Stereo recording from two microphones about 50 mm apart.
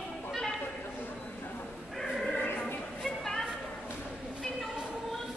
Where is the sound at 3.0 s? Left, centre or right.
Centre.